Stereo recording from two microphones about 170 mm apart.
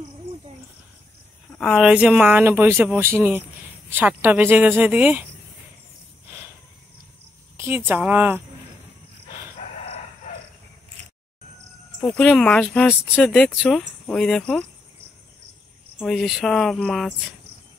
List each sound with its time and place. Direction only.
1.6 s speech: 5° right (ahead or behind)
7.5 s speech: 15° right (ahead or behind)
9.6 s chicken: 40° left (ahead or behind)
12.2 s speech: 5° left (ahead or behind)
16.0 s speech: centre (ahead or behind)